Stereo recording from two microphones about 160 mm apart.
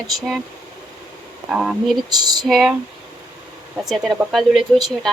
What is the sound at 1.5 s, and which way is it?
Speech, 5° right (ahead or behind).